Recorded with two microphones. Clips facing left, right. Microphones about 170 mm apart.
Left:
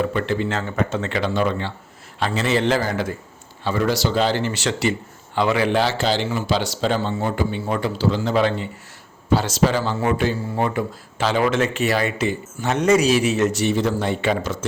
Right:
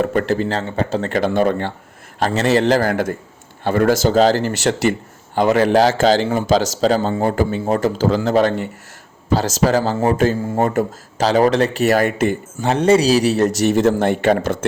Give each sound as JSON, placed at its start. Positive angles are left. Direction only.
{"t": 0.0, "sound": "speech", "side_deg": -45}
{"t": 2.8, "sound": "speech", "side_deg": -55}
{"t": 12.6, "sound": "speech", "side_deg": -30}